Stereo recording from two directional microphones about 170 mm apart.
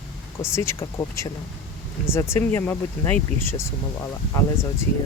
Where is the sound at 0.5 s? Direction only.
15° left (ahead or behind).